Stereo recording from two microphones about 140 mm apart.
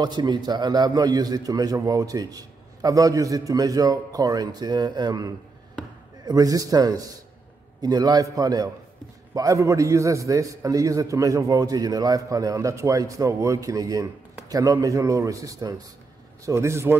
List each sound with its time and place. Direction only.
0.0 s a man's voice: 30° right (ahead or behind)